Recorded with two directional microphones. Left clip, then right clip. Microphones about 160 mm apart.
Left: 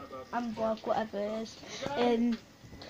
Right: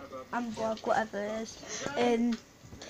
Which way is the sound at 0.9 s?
5° left (ahead or behind).